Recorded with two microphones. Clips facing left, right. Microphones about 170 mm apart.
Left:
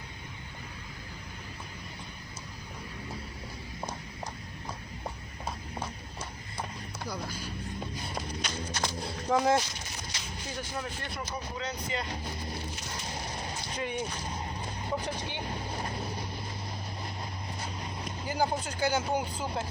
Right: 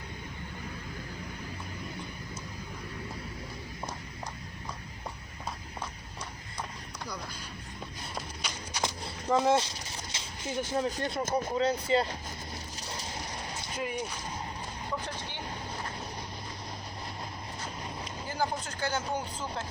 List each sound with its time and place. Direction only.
8.0 s a sound: 5° right (ahead or behind)
8.8 s a sound: 20° right (ahead or behind)
10.8 s speech: 40° right (ahead or behind)
11.6 s speech: 30° right (ahead or behind)
13.7 s speech: 5° right (ahead or behind)
18.3 s speech: 10° left (ahead or behind)